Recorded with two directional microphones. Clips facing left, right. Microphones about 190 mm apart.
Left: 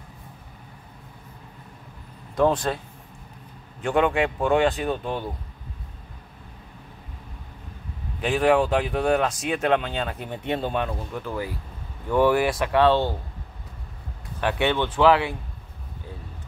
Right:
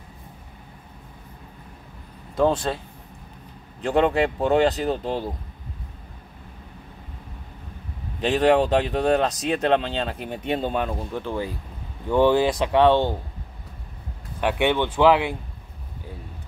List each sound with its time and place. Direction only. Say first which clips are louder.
2.3 s speech: even; 5° right (ahead or behind)
3.8 s speech: right 2 dB; 35° right (ahead or behind)
8.2 s speech: right 2 dB; 30° right (ahead or behind)
10.2 s speech: right 2 dB; 15° right (ahead or behind)
14.4 s speech: right 2 dB; 15° right (ahead or behind)